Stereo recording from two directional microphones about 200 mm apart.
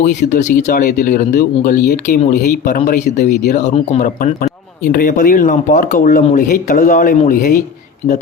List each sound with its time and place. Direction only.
0.0 s speech: 35° left (ahead or behind)